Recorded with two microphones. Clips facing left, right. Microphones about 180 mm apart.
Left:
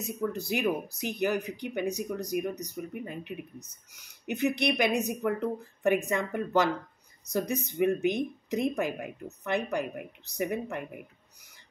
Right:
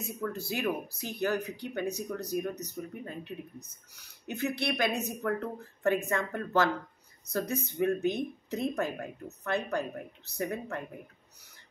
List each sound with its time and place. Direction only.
0.2 s speech: 15° left (ahead or behind)